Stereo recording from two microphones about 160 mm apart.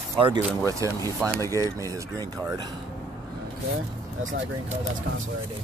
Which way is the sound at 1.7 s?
20° right (ahead or behind).